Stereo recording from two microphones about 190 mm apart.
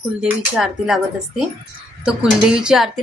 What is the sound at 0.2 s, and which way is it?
Speech, centre (ahead or behind).